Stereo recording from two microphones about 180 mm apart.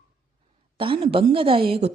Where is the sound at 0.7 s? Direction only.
30° right (ahead or behind).